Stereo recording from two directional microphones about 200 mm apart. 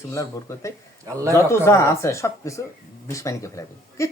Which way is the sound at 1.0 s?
15° right (ahead or behind).